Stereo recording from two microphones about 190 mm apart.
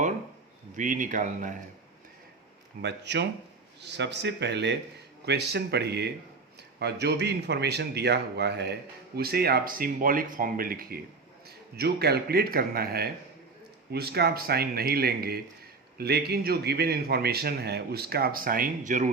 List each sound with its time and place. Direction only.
0.8 s speech: 45° right (ahead or behind)
2.8 s a man's voice: 65° right (ahead or behind); by 19.1 s 40° right (ahead or behind)